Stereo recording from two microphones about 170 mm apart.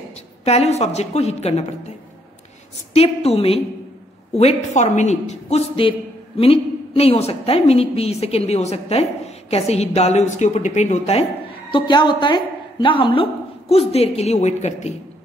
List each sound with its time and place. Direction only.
0.5 s a woman's voice: 40° left (ahead or behind)
2.9 s a woman's voice: 35° left (ahead or behind)
11.7 s a woman's voice: 25° left (ahead or behind)